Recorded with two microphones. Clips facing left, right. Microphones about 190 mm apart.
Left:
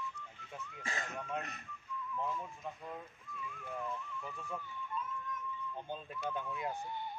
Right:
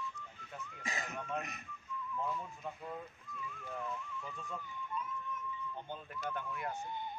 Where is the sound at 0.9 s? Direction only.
10° right (ahead or behind).